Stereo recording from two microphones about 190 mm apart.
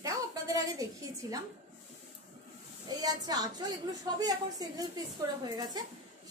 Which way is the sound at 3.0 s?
20° right (ahead or behind).